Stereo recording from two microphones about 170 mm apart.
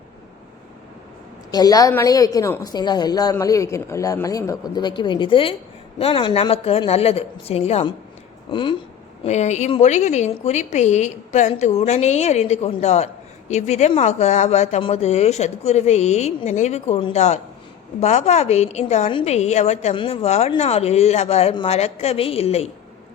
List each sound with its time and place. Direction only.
1.5 s a woman's voice: 20° left (ahead or behind)
9.2 s a woman's voice: 40° left (ahead or behind)